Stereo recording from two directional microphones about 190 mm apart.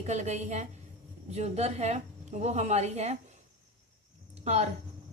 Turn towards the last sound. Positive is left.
turn(degrees=-35)  # may be behind; listen again after turning